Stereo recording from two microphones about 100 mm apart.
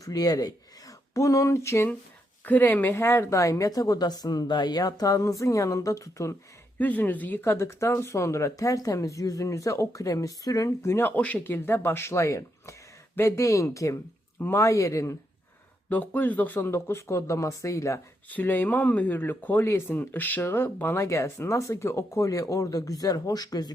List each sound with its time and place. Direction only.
0.0 s a woman's voice: 40° left (ahead or behind)
6.7 s speech: 15° left (ahead or behind)
15.9 s speech: 15° left (ahead or behind)
18.3 s a woman's voice: 15° left (ahead or behind); by 23.7 s 40° left (ahead or behind)